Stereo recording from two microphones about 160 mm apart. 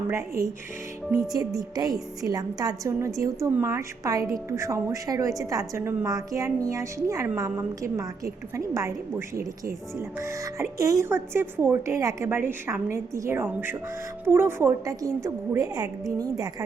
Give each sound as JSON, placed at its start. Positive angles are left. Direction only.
{"t": 0.1, "sound": "a woman's voice", "side_deg": -20}